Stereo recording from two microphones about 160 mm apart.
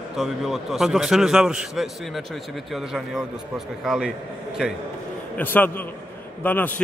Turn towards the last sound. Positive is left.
turn(degrees=10)  # may be behind; listen again after turning